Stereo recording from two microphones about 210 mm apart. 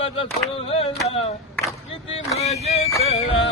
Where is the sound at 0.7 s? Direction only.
25° left (ahead or behind).